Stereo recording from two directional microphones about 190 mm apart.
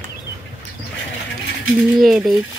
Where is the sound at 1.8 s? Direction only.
Centre (ahead or behind).